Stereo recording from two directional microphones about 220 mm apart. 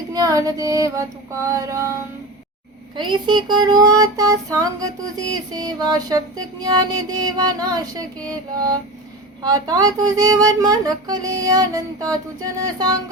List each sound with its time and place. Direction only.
0.1 s child singing: 15° right (ahead or behind)
1.5 s music: 15° right (ahead or behind)
2.9 s music: 20° right (ahead or behind)
9.4 s music: 15° right (ahead or behind)